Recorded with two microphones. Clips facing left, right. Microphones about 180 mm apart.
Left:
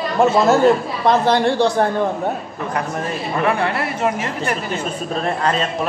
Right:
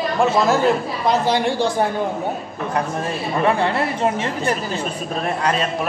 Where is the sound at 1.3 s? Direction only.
10° right (ahead or behind).